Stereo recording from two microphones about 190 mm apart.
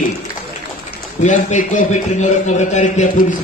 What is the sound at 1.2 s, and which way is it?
A man's voice, 40° left (ahead or behind).